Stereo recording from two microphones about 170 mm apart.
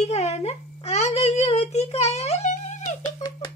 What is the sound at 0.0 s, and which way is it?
Speech, 40° left (ahead or behind).